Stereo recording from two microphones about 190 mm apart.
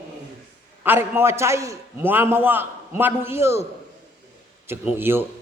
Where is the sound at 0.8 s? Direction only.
10° right (ahead or behind).